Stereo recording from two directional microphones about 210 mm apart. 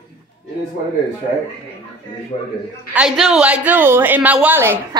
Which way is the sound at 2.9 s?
5° right (ahead or behind).